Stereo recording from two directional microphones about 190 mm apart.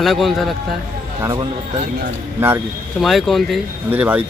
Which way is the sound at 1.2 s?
20° right (ahead or behind).